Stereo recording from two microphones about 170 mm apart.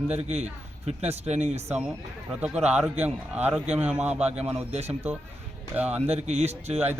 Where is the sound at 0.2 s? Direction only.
40° right (ahead or behind).